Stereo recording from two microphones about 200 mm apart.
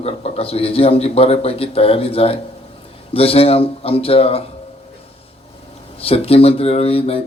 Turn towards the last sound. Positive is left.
turn(degrees=30)  # may be behind; listen again after turning